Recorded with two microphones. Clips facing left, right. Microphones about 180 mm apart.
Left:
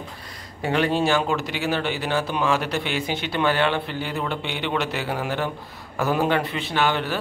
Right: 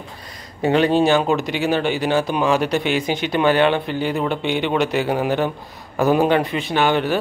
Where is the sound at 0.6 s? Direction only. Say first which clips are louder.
Right 6 dB; 20° right (ahead or behind).